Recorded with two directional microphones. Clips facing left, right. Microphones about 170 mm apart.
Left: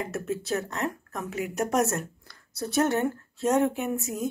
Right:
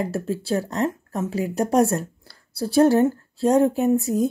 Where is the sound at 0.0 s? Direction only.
30° right (ahead or behind).